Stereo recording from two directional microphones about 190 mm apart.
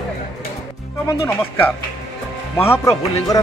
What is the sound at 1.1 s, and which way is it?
Speech, 10° left (ahead or behind).